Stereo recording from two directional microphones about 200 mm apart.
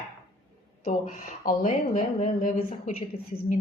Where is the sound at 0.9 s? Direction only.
45° left (ahead or behind).